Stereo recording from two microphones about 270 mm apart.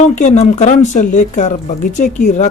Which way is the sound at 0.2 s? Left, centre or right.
Left.